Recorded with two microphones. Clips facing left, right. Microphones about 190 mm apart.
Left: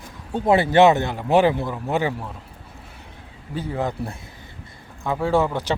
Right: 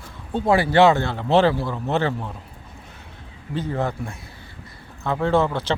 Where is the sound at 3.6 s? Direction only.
10° left (ahead or behind).